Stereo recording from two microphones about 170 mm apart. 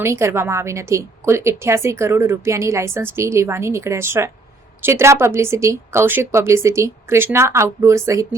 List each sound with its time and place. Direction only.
0.0 s a woman's voice: 15° right (ahead or behind)